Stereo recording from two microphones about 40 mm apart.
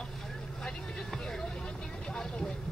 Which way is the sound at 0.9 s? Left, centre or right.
Centre.